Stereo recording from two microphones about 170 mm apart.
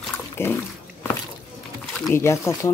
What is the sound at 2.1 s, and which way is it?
Speech, 15° left (ahead or behind).